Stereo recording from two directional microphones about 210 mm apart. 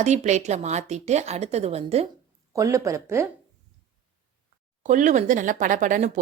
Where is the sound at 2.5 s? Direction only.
15° right (ahead or behind).